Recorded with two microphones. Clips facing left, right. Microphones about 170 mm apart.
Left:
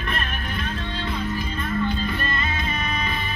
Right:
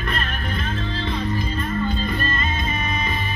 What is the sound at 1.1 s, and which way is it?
Music, 35° right (ahead or behind).